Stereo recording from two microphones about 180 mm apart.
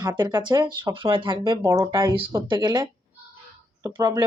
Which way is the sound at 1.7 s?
15° right (ahead or behind).